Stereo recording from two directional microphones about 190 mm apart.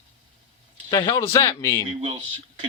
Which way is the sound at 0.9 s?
20° left (ahead or behind).